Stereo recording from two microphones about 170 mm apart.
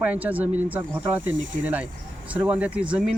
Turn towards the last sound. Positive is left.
turn(degrees=-10)  # may be behind; listen again after turning